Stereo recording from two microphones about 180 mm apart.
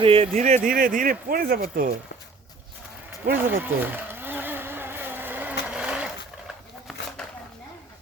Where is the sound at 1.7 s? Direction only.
60° right (ahead or behind).